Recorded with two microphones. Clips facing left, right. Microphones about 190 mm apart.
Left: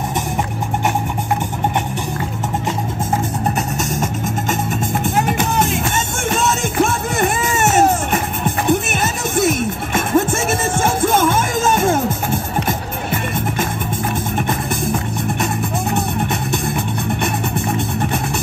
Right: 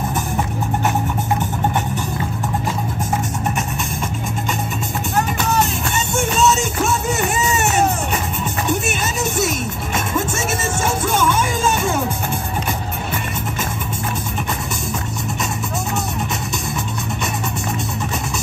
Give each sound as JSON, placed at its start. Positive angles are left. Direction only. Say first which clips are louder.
{"t": 5.6, "sound": "music", "louder": "left 2 dB", "side_deg": 50}